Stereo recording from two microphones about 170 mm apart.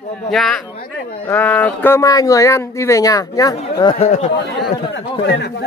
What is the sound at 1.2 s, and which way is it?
Speech, 10° left (ahead or behind).